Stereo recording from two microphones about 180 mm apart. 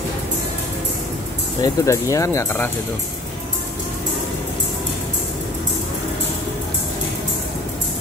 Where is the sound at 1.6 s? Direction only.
15° left (ahead or behind).